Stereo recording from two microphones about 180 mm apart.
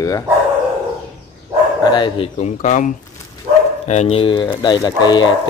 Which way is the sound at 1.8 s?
25° left (ahead or behind).